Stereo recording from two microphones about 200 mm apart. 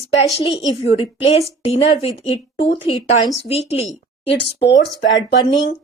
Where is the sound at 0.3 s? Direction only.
25° left (ahead or behind).